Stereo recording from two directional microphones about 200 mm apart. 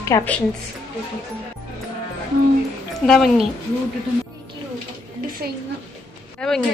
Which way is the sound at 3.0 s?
Centre (ahead or behind).